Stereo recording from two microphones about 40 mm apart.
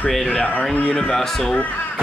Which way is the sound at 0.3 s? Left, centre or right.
Left.